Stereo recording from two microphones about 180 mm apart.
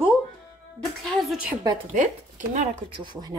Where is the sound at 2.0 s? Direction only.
45° right (ahead or behind).